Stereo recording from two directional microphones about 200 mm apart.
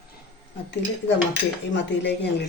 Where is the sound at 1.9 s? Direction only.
60° left (ahead or behind).